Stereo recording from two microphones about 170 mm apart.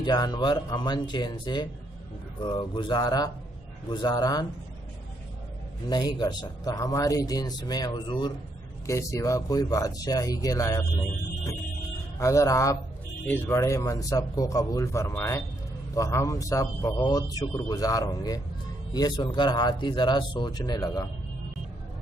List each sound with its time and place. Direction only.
0.0 s a man's voice: 25° left (ahead or behind)
5.9 s a man's voice: 25° left (ahead or behind)
12.2 s a man's voice: 20° left (ahead or behind)